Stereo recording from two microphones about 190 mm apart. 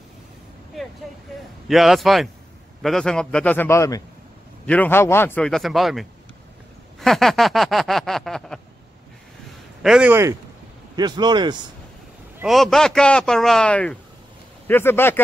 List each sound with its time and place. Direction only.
1.7 s a man's voice: centre (ahead or behind)
7.0 s a sound: centre (ahead or behind)
9.8 s a man's voice: 5° right (ahead or behind)
11.0 s speech: 20° right (ahead or behind)
12.4 s a man's voice: centre (ahead or behind)